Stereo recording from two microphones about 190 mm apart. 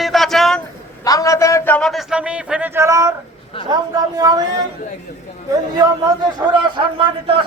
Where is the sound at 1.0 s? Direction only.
20° left (ahead or behind); by 4.4 s 20° right (ahead or behind).